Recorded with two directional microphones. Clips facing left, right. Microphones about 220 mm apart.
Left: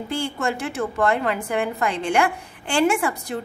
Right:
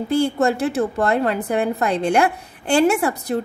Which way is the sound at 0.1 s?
40° right (ahead or behind).